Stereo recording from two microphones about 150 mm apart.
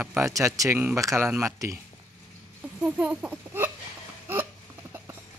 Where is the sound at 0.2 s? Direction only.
20° right (ahead or behind).